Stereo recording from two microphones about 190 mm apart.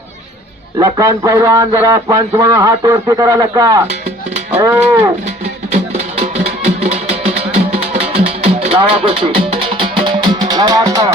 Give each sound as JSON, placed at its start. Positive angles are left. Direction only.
{"t": 0.8, "sound": "a man's voice", "side_deg": -20}
{"t": 4.5, "sound": "livestock", "side_deg": -10}
{"t": 6.3, "sound": "music", "side_deg": -35}